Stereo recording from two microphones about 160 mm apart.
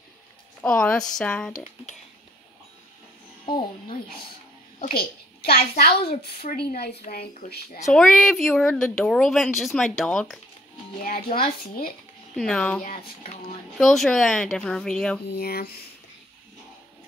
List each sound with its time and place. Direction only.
0.6 s a woman's voice: 5° left (ahead or behind)
3.5 s a woman's voice: 65° left (ahead or behind)
4.7 s a woman's voice: 70° left (ahead or behind)
7.9 s a woman's voice: 5° left (ahead or behind)
11.0 s a woman's voice: 65° left (ahead or behind)
12.4 s a woman's voice: 5° left (ahead or behind)
15.3 s a woman's voice: 70° left (ahead or behind)